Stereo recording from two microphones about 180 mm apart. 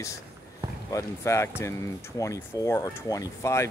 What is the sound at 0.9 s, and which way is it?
Speech, 15° left (ahead or behind).